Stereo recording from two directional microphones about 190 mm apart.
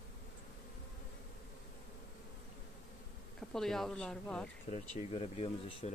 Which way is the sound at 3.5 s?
Centre (ahead or behind).